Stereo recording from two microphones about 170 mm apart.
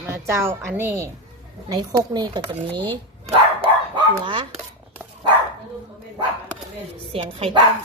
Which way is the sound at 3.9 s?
30° right (ahead or behind).